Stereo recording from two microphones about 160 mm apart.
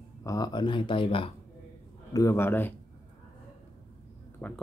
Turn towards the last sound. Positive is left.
turn(degrees=10)  # may be behind; listen again after turning